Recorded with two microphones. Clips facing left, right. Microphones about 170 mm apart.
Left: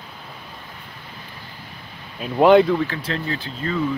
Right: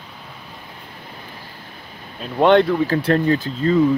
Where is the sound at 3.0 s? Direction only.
45° right (ahead or behind).